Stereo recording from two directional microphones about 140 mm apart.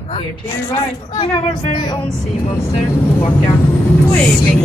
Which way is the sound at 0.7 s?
40° left (ahead or behind).